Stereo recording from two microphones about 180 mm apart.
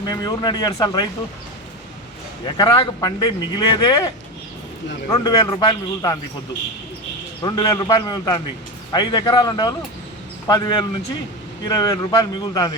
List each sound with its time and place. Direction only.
0.1 s speech: 25° left (ahead or behind)
2.6 s speech: 25° left (ahead or behind)
7.4 s speech: 20° left (ahead or behind)